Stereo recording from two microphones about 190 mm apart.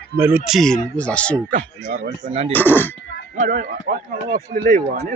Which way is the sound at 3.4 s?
45° right (ahead or behind).